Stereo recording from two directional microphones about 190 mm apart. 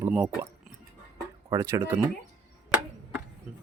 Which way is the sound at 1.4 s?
15° right (ahead or behind).